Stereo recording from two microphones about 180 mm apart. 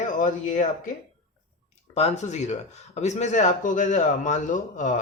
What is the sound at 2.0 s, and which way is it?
Speech, 40° left (ahead or behind).